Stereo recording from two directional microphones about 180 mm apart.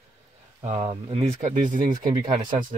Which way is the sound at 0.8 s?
35° right (ahead or behind).